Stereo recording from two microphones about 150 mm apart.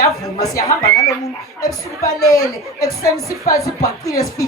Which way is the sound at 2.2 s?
25° left (ahead or behind).